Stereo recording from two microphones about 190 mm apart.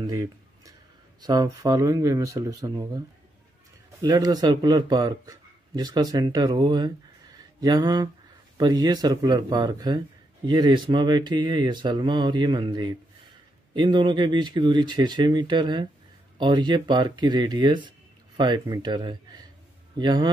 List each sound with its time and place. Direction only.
0.0 s a sound: 20° right (ahead or behind)
1.2 s speech: 20° right (ahead or behind)
4.0 s speech: 20° right (ahead or behind)